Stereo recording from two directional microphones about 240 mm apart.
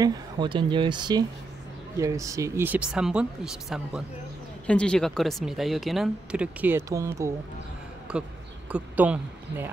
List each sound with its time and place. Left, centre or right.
0.0 s speech: centre